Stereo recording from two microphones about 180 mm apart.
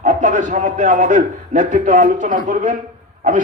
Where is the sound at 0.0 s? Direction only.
45° right (ahead or behind).